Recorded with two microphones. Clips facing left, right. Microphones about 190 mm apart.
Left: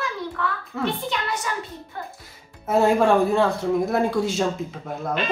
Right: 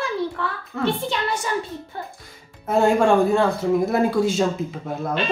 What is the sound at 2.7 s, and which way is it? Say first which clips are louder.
Speech: right 1 dB; centre (ahead or behind).